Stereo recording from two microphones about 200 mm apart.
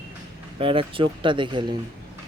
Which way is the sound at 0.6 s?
25° right (ahead or behind).